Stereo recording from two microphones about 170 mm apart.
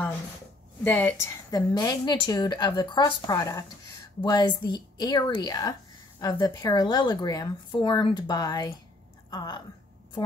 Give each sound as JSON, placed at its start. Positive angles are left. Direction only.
{"t": 0.8, "sound": "a woman's voice", "side_deg": 10}